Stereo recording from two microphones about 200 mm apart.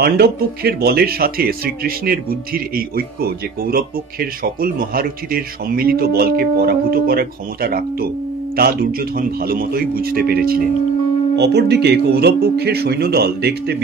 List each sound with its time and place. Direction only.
0.0 s speech: 50° right (ahead or behind)